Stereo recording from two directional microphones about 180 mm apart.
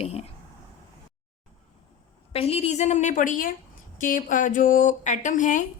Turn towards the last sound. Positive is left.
turn(degrees=45)  # may be behind; listen again after turning